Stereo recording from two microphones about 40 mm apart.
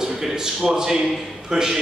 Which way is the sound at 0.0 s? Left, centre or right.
Centre.